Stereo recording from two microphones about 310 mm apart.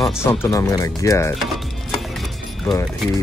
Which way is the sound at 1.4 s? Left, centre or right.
Centre.